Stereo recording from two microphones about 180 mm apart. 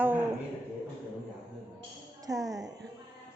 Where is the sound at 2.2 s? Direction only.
20° right (ahead or behind).